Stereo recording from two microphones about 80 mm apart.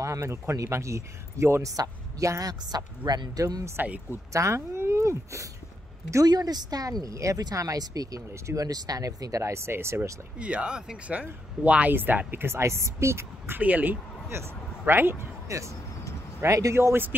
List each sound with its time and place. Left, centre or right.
0.0 s speech: right
2.7 s speech: right
3.8 s speech: centre
4.3 s speech: right
6.2 s speech: right
10.4 s speech: centre; by 13.6 s right
13.6 s speech: centre
14.3 s speech: right
15.4 s speech: right